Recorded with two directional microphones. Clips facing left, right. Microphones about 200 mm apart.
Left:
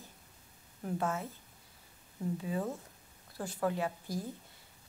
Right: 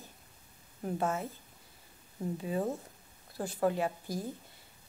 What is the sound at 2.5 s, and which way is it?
Speech, 25° right (ahead or behind).